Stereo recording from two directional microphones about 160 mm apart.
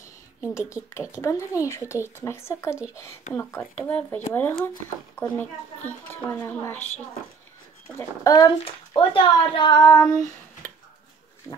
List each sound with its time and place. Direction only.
0.4 s speech: 20° left (ahead or behind)
8.2 s speech: 25° left (ahead or behind)
8.6 s speech: 35° left (ahead or behind)